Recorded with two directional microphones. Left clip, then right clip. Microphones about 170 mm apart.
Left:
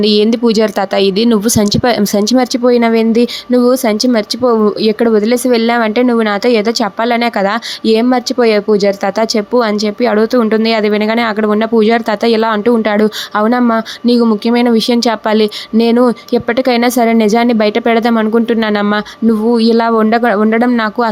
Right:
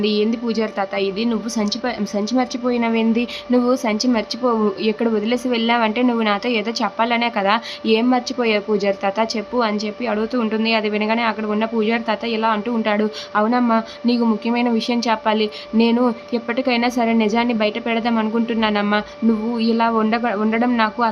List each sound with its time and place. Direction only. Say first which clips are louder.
0.0 s a woman's voice: left 9 dB; 45° left (ahead or behind)